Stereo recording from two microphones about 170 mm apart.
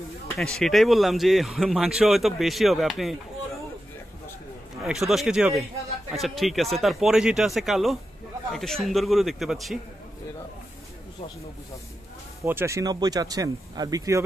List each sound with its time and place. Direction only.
0.4 s speech: 5° left (ahead or behind)
4.8 s speech: centre (ahead or behind)
12.4 s speech: 15° right (ahead or behind)